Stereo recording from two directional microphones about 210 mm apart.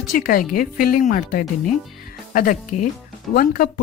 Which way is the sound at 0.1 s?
40° left (ahead or behind).